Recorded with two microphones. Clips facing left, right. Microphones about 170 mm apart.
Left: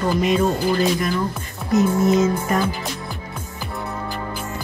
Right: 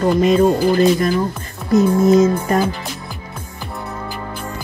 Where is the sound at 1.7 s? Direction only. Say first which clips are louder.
Right 4 dB; 30° right (ahead or behind).